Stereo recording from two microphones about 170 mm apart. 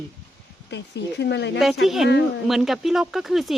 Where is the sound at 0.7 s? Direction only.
90° left.